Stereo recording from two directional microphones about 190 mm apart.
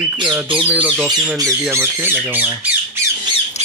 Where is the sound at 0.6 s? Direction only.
10° right (ahead or behind).